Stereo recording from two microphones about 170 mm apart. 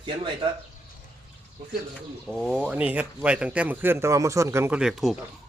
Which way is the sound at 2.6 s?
10° right (ahead or behind).